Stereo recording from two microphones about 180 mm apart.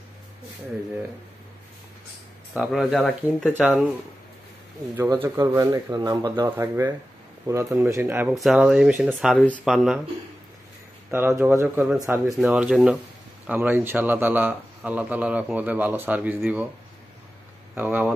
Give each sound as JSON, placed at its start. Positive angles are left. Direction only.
{"t": 2.5, "sound": "speech", "side_deg": -5}
{"t": 4.9, "sound": "a man's voice", "side_deg": -15}
{"t": 11.1, "sound": "a man's voice", "side_deg": -15}
{"t": 17.7, "sound": "a man's voice", "side_deg": -10}